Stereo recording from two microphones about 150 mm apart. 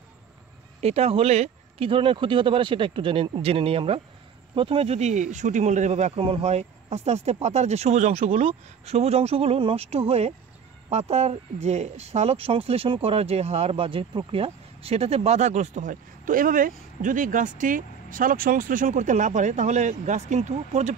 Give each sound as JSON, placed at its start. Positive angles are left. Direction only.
{"t": 0.7, "sound": "speech", "side_deg": -45}